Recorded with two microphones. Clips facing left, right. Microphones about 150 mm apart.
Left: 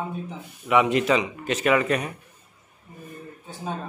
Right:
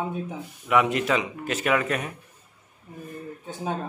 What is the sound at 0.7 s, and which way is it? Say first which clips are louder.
Speech: left 2 dB; centre (ahead or behind).